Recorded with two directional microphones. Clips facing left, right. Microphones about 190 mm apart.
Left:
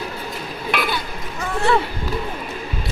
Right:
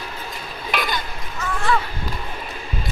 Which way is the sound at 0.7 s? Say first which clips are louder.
Left 2 dB; 5° left (ahead or behind).